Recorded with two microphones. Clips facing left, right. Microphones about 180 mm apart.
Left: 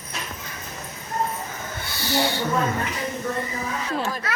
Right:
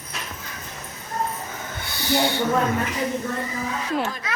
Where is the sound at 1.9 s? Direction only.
15° right (ahead or behind).